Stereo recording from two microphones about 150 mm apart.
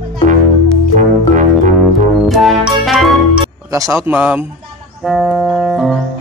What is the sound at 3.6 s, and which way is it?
Speech, 20° right (ahead or behind).